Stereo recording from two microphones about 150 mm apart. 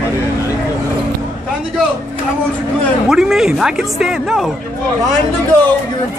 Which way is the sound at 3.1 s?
5° right (ahead or behind).